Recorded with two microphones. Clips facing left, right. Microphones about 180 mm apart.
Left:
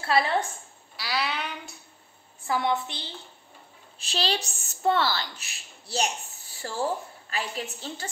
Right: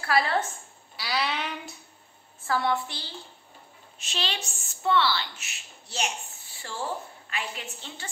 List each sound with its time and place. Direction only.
0.0 s a woman's voice: 25° left (ahead or behind)
0.9 s child singing: centre (ahead or behind)
2.4 s a woman's voice: 20° left (ahead or behind)
4.0 s a woman's voice: 35° left (ahead or behind)
7.2 s a woman's voice: 35° left (ahead or behind)